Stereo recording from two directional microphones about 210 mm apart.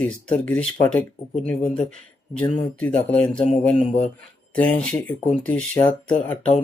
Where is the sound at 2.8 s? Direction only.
5° left (ahead or behind).